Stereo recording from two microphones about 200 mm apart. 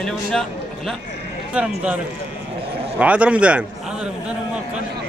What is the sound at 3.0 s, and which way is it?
Speech, 5° right (ahead or behind).